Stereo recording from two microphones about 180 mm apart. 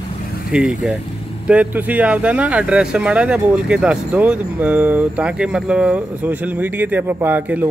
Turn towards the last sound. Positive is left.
turn(degrees=-10)  # may be behind; listen again after turning